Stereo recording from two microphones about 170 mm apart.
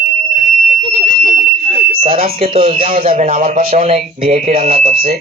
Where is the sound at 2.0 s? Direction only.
35° right (ahead or behind).